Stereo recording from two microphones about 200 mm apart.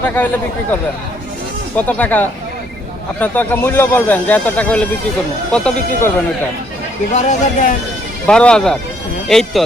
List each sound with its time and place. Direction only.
0.0 s speech: 10° left (ahead or behind)
1.7 s speech: 10° left (ahead or behind)
7.1 s speech: 35° left (ahead or behind)
8.3 s speech: 5° left (ahead or behind)